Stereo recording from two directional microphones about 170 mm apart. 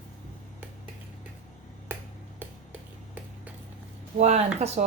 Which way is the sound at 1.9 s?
15° right (ahead or behind).